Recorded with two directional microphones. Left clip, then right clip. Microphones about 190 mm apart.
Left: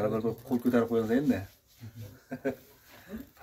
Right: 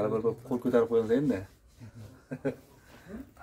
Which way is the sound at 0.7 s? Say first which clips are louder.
Right 3 dB; 5° left (ahead or behind).